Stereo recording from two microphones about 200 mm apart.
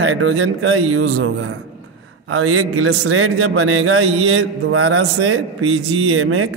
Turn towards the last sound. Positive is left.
turn(degrees=-90)